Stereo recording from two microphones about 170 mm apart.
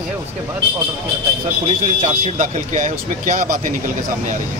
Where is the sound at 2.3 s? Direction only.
50° right (ahead or behind).